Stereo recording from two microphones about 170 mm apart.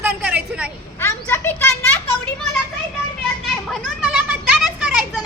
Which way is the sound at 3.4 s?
Centre (ahead or behind).